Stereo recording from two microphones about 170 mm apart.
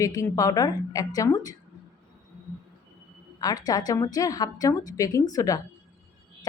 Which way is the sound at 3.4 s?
20° left (ahead or behind).